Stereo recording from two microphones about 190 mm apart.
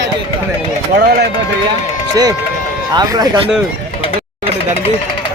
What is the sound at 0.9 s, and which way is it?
Speech, 50° right (ahead or behind).